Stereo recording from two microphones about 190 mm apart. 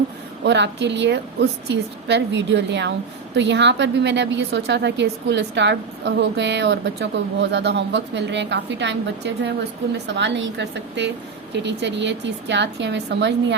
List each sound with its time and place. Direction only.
0.4 s a woman's voice: 65° right (ahead or behind)